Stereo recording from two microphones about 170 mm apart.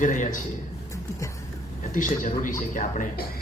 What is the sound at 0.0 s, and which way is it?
Speech, 50° left (ahead or behind).